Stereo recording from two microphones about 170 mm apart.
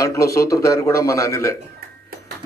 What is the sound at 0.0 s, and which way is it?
A man's voice, 20° left (ahead or behind).